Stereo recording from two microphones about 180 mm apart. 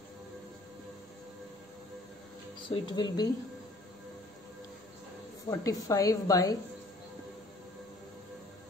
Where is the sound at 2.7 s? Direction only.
25° left (ahead or behind).